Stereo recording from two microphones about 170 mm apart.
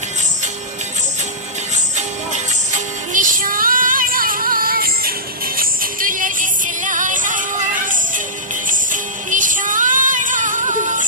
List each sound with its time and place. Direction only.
1.7 s music: 45° right (ahead or behind)